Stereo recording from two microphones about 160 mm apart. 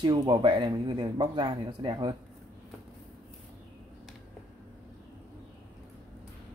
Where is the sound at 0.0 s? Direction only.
30° right (ahead or behind).